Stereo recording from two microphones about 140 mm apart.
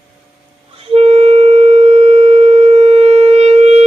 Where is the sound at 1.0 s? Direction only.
45° right (ahead or behind).